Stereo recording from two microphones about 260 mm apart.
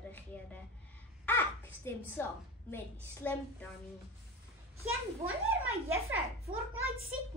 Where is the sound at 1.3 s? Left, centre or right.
Centre.